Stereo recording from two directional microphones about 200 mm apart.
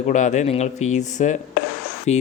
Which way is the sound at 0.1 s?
40° left (ahead or behind).